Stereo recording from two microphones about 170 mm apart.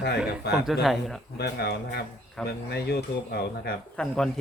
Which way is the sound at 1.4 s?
75° left (ahead or behind).